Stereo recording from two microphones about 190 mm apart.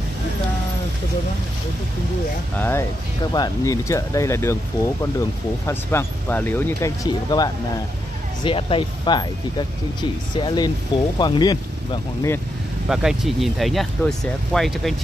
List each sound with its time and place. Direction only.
2.5 s speech: 10° left (ahead or behind)
12.8 s speech: 5° right (ahead or behind)